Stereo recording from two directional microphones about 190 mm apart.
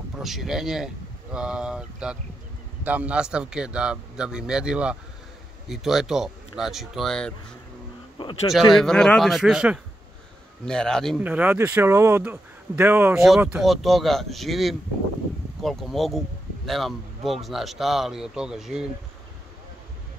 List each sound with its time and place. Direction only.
0.2 s speech: centre (ahead or behind)
8.2 s speech: 25° left (ahead or behind)
8.7 s speech: 5° left (ahead or behind)
11.2 s speech: 10° right (ahead or behind)